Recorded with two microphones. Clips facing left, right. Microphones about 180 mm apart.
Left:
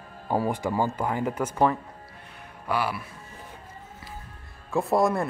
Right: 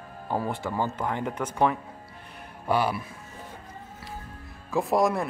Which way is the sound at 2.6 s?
25° right (ahead or behind).